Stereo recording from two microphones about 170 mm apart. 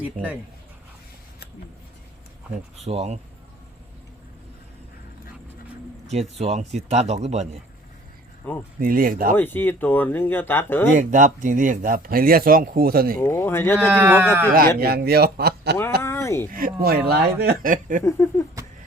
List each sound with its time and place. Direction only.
0.0 s speech: 10° right (ahead or behind)
2.8 s speech: 40° right (ahead or behind)
6.1 s speech: 35° right (ahead or behind)
8.8 s speech: 55° right (ahead or behind)
9.3 s speech: 10° left (ahead or behind)
10.9 s speech: 50° right (ahead or behind)
13.1 s speech: 15° left (ahead or behind)
13.9 s speech: 10° right (ahead or behind)
14.8 s a man's voice: 65° right (ahead or behind)
16.0 s a sound: 15° left (ahead or behind)
16.5 s speech: 55° right (ahead or behind)
18.0 s speech: 15° left (ahead or behind)